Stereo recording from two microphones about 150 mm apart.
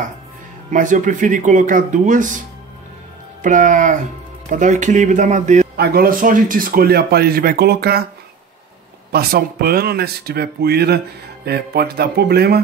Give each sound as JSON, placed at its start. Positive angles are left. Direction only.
{"t": 0.7, "sound": "speech", "side_deg": -60}
{"t": 3.4, "sound": "speech", "side_deg": -60}
{"t": 5.8, "sound": "speech", "side_deg": -85}
{"t": 9.1, "sound": "speech", "side_deg": -90}